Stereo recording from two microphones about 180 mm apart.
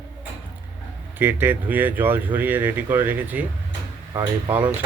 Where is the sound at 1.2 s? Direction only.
10° right (ahead or behind).